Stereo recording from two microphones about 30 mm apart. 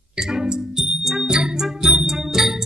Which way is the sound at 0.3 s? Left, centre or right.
Centre.